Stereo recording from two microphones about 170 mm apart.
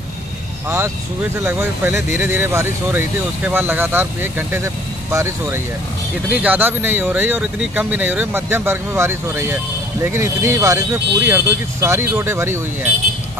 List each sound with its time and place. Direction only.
0.7 s speech: 15° right (ahead or behind)